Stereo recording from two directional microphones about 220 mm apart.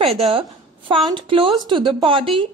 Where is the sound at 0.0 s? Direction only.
25° right (ahead or behind).